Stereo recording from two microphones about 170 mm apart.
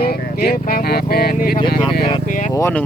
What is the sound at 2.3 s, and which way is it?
Speech, 45° left (ahead or behind).